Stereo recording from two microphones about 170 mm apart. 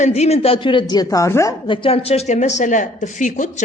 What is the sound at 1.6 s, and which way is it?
A woman's voice, 30° left (ahead or behind).